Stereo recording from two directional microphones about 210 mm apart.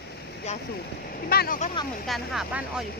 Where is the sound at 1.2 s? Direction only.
45° left (ahead or behind).